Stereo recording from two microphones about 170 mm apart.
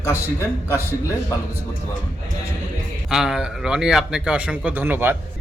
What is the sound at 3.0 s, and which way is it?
A man's voice, 5° right (ahead or behind).